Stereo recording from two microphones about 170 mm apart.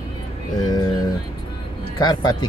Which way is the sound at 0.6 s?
25° left (ahead or behind).